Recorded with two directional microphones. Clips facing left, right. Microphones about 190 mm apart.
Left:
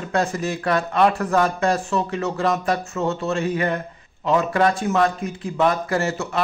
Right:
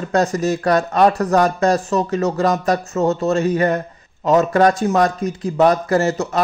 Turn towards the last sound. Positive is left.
turn(degrees=-40)  # may be behind; listen again after turning